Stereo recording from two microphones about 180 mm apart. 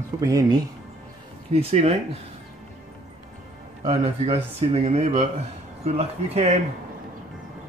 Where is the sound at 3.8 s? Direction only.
35° right (ahead or behind).